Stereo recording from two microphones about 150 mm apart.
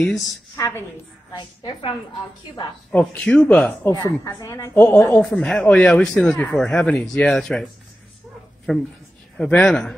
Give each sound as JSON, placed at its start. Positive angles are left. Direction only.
{"t": 0.6, "sound": "a woman's voice", "side_deg": 15}
{"t": 1.3, "sound": "a woman's voice", "side_deg": 30}
{"t": 2.9, "sound": "speech", "side_deg": 5}
{"t": 4.2, "sound": "a woman's voice", "side_deg": 25}
{"t": 8.7, "sound": "speech", "side_deg": 0}